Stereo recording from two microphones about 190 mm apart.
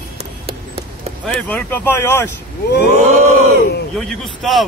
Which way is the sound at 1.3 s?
10° left (ahead or behind).